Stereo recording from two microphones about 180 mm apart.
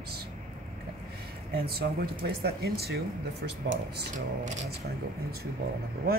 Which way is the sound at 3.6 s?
90° right.